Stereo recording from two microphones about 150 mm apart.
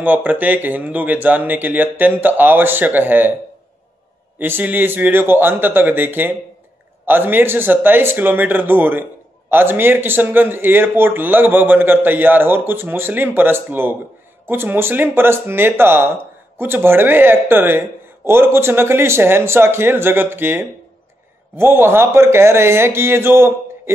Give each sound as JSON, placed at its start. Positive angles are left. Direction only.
{"t": 0.0, "sound": "a man's voice", "side_deg": -10}
{"t": 4.4, "sound": "a man's voice", "side_deg": -15}